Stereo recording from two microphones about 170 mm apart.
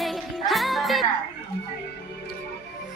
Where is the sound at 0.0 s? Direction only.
Centre (ahead or behind).